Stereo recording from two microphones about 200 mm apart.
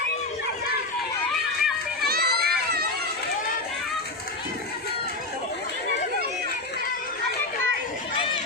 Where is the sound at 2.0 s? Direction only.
50° right (ahead or behind).